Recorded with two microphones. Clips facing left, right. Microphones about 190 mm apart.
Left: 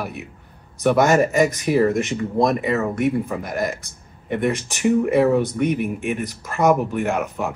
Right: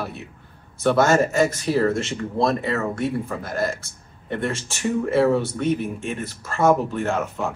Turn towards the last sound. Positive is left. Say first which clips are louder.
# left 1 dB
turn(degrees=15)  # may be behind; listen again after turning